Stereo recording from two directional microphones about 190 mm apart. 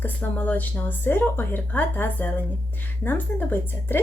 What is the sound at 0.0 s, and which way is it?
A woman's voice, 10° left (ahead or behind).